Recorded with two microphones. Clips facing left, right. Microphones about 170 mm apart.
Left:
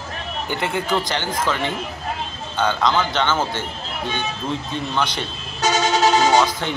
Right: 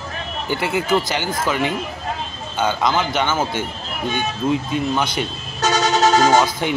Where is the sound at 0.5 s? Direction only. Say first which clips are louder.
Right 3 dB; 5° right (ahead or behind).